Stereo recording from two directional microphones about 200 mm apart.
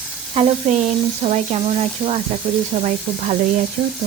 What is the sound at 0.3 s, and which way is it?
Speech, 35° right (ahead or behind).